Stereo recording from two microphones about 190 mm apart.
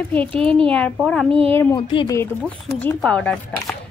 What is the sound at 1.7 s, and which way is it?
Speech, 20° left (ahead or behind).